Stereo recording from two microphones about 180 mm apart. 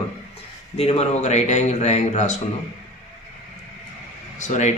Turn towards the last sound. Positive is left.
turn(degrees=40)  # may be behind; listen again after turning